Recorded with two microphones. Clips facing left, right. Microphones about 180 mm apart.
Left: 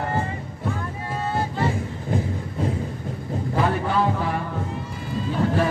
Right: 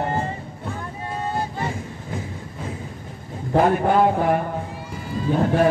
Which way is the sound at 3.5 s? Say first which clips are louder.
Right 6 dB; 50° right (ahead or behind).